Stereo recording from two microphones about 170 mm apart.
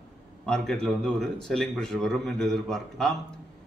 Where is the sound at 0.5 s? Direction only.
5° left (ahead or behind).